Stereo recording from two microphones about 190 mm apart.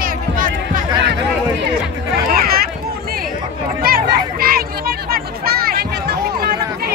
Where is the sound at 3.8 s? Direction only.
50° right (ahead or behind).